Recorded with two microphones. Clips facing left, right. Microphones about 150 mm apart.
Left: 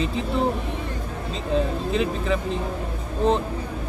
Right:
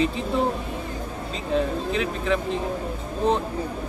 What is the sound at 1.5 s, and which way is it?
Speech, centre (ahead or behind).